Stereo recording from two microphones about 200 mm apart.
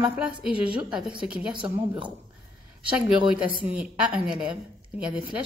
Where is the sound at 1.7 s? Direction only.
25° right (ahead or behind).